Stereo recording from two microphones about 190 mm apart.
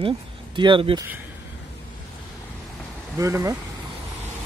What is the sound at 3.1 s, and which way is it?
Speech, 15° right (ahead or behind).